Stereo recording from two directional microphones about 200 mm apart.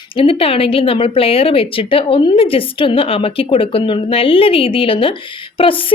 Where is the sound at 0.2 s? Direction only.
30° left (ahead or behind).